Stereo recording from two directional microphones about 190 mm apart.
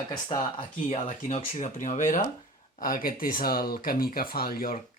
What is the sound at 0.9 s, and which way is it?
Speech, 40° left (ahead or behind).